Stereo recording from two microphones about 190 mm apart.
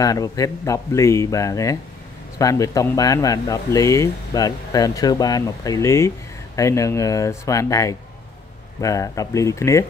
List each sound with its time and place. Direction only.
0.0 s speech: 20° left (ahead or behind)